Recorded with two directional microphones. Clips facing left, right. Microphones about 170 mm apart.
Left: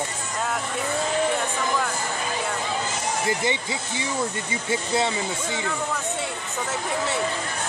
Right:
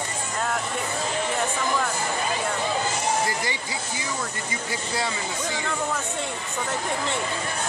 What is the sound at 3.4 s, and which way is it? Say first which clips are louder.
Speech: left 4 dB; 25° left (ahead or behind).